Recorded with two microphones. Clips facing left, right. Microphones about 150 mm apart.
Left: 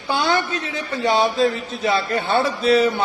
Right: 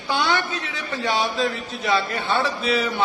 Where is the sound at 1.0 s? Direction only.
40° left (ahead or behind).